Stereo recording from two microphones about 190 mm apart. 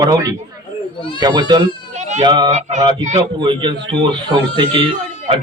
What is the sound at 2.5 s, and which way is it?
Speech, 35° right (ahead or behind).